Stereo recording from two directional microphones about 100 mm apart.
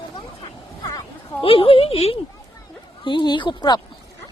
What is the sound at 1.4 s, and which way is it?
Speech, 65° left (ahead or behind).